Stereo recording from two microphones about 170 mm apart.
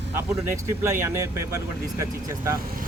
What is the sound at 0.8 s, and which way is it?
A man's voice, 15° right (ahead or behind).